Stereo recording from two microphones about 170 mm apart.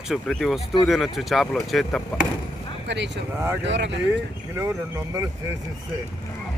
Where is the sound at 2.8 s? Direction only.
90° right.